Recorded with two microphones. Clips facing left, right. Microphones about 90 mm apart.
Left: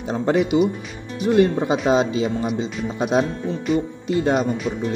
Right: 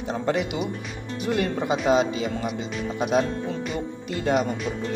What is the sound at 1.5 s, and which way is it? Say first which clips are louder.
Speech: left 3 dB; 30° left (ahead or behind).